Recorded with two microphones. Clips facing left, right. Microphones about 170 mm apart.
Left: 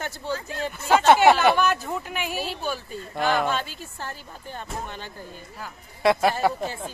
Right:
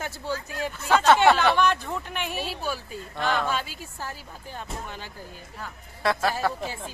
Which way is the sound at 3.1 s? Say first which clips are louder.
Left 3 dB; 5° left (ahead or behind).